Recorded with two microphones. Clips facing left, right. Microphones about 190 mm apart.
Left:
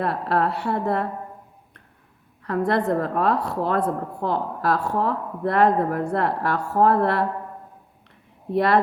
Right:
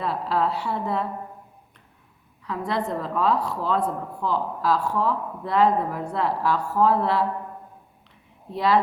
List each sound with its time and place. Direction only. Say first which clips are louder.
0.0 s a woman's voice: left 2 dB; 60° left (ahead or behind)
2.4 s a woman's voice: left 5 dB; 55° left (ahead or behind)
8.5 s a woman's voice: left 2 dB; 55° left (ahead or behind)